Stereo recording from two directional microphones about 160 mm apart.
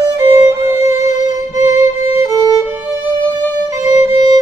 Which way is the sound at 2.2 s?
15° right (ahead or behind).